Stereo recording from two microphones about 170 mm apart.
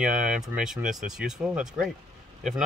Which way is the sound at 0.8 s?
50° right (ahead or behind).